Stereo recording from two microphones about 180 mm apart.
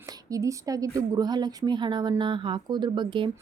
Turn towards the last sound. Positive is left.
turn(degrees=-25)  # may be behind; listen again after turning